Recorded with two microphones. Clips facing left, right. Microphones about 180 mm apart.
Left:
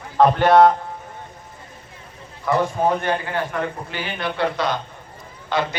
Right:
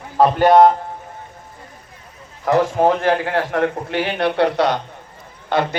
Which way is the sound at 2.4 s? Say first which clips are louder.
Right 4 dB; 90° right.